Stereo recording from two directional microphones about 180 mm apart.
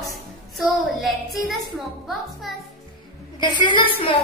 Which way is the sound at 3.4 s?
25° left (ahead or behind).